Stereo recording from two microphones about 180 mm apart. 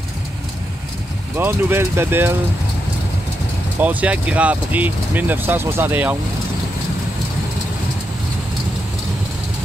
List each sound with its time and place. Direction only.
1.3 s speech: 10° right (ahead or behind)
3.8 s speech: 10° right (ahead or behind)